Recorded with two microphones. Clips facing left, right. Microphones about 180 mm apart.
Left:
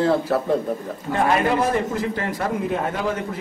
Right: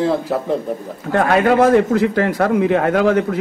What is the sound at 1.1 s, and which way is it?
A man's voice, 70° right (ahead or behind).